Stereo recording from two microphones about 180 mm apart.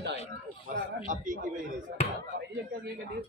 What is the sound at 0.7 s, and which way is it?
Speech, 45° right (ahead or behind).